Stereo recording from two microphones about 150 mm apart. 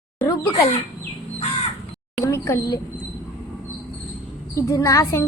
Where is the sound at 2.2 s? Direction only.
20° left (ahead or behind).